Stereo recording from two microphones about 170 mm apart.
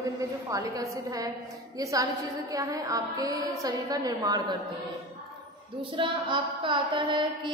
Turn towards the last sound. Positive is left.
turn(degrees=-30)  # may be behind; listen again after turning